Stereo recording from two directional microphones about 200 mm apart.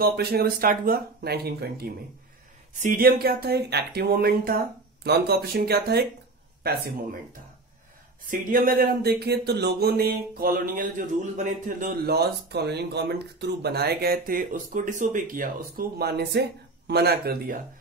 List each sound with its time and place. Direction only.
0.0 s speech: 50° right (ahead or behind)
8.3 s speech: 45° right (ahead or behind)